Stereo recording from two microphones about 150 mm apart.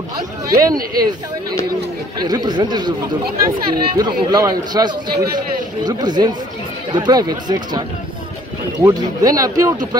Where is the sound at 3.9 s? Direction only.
25° right (ahead or behind).